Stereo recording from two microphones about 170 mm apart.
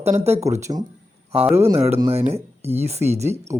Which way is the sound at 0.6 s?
25° right (ahead or behind).